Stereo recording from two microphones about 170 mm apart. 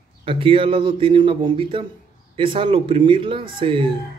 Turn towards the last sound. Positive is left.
turn(degrees=-30)  # may be behind; listen again after turning